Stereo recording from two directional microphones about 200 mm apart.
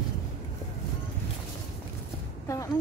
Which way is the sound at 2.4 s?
15° left (ahead or behind).